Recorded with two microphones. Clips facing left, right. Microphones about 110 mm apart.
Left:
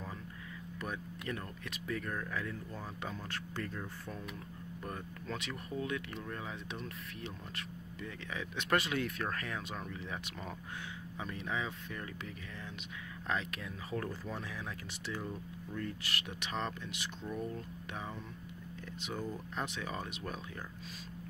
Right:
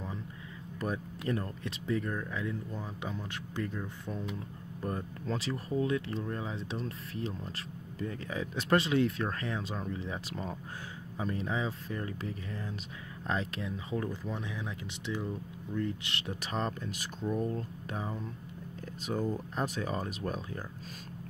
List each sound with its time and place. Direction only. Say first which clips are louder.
0.7 s speech: right 7 dB; 35° right (ahead or behind)